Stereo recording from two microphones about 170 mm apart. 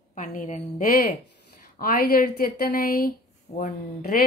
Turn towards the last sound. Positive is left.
turn(degrees=55)  # may be behind; listen again after turning